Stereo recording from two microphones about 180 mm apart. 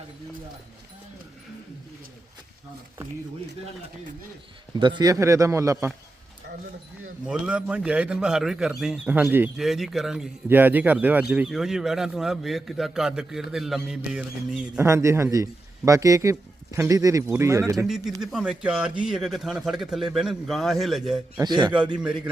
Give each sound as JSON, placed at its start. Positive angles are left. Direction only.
{"t": 4.7, "sound": "a man's voice", "side_deg": -25}
{"t": 7.3, "sound": "a man's voice", "side_deg": -5}
{"t": 14.8, "sound": "a man's voice", "side_deg": -15}
{"t": 17.8, "sound": "a man's voice", "side_deg": 0}
{"t": 21.3, "sound": "a man's voice", "side_deg": -25}
{"t": 21.9, "sound": "a man's voice", "side_deg": -5}